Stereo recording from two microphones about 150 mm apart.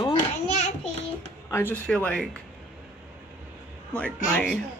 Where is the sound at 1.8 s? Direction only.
5° left (ahead or behind).